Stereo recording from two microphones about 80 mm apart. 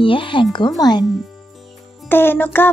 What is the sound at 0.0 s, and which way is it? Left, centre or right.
Speech, left.